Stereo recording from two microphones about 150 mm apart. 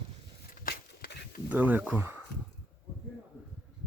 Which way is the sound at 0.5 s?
80° left.